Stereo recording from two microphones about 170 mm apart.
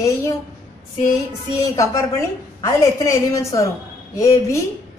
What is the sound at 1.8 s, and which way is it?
A woman's voice, 20° left (ahead or behind).